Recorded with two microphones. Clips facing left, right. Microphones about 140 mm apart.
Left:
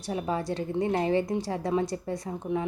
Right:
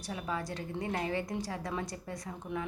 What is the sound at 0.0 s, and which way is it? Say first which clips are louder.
A woman's voice: left 7 dB; 30° left (ahead or behind).